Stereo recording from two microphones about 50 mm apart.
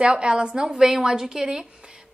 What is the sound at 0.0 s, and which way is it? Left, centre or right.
A woman's voice, centre.